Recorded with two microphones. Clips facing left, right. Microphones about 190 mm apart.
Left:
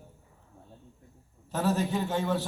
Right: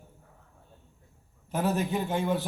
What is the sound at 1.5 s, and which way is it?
Speech, 15° right (ahead or behind).